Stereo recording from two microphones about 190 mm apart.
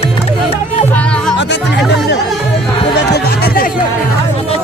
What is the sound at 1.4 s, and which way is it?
Music, 65° left (ahead or behind).